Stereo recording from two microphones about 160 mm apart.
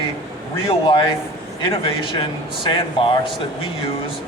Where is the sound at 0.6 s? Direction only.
30° left (ahead or behind).